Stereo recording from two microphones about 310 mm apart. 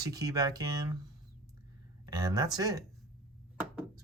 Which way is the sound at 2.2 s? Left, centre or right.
Centre.